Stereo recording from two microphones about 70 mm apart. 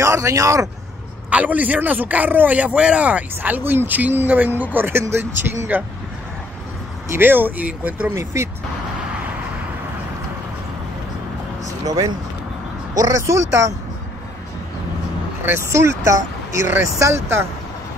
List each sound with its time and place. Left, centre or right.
0.0 s speech: right
1.3 s speech: right
7.1 s speech: right
8.1 s speech: right
11.8 s speech: right
15.4 s speech: right